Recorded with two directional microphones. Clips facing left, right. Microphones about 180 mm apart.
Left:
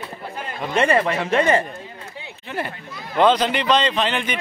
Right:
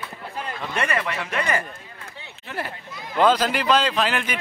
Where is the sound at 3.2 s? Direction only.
5° right (ahead or behind).